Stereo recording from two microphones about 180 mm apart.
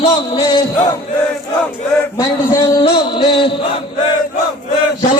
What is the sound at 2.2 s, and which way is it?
A man's voice, 20° left (ahead or behind).